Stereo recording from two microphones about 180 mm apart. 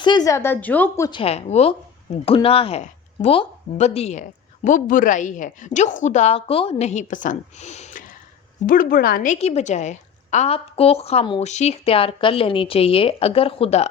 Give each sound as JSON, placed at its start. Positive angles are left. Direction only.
{"t": 0.0, "sound": "a woman's voice", "side_deg": 25}
{"t": 1.2, "sound": "speech", "side_deg": 35}
{"t": 8.6, "sound": "speech", "side_deg": 50}